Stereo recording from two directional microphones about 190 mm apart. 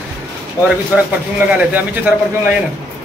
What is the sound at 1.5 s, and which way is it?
Speech, 10° right (ahead or behind).